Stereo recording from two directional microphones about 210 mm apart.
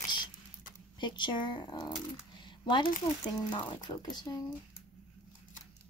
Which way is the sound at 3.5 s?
20° left (ahead or behind).